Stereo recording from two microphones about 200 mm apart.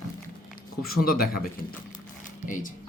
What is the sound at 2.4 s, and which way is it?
Speech, 40° left (ahead or behind).